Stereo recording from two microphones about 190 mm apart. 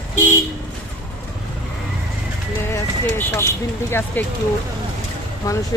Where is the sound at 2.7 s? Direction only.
15° left (ahead or behind).